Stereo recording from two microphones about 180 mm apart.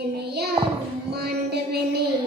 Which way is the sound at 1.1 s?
65° right (ahead or behind).